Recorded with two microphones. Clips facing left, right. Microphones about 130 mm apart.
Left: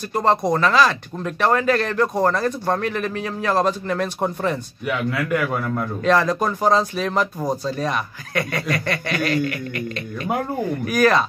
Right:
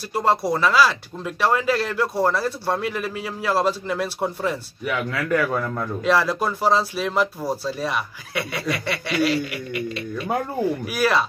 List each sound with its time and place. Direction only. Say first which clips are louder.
0.1 s speech: left 2 dB; 5° right (ahead or behind)
4.8 s a man's voice: left 2 dB; 20° left (ahead or behind)
6.0 s speech: left 2 dB; 5° right (ahead or behind)
7.3 s a man's voice: left 2 dB; 20° left (ahead or behind)
7.7 s speech: left 2 dB; 10° right (ahead or behind)